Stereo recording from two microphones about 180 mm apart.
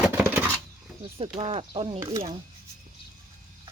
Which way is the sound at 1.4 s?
30° right (ahead or behind).